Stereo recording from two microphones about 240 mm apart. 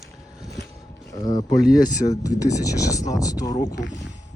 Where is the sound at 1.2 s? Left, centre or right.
Centre.